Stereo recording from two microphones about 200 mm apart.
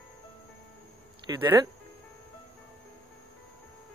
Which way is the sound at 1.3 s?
15° right (ahead or behind).